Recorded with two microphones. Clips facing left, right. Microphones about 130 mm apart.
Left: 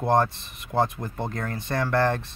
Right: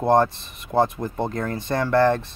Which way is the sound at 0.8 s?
20° right (ahead or behind).